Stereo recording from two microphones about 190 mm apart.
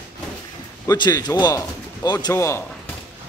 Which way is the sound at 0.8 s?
20° left (ahead or behind).